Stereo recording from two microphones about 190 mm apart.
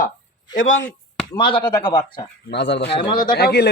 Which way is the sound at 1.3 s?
25° left (ahead or behind).